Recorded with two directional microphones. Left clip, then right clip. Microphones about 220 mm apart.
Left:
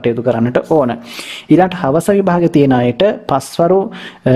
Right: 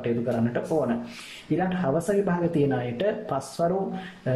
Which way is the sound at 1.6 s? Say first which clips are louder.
Left 12 dB; 45° left (ahead or behind).